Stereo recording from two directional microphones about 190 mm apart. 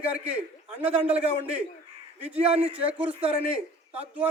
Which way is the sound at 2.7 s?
5° right (ahead or behind).